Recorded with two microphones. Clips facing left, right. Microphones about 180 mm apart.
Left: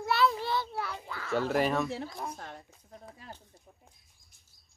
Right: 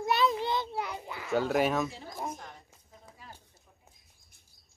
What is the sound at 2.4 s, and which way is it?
Speech, 65° left (ahead or behind).